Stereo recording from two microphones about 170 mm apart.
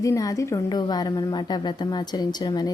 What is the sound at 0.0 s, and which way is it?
A woman's voice, 20° left (ahead or behind).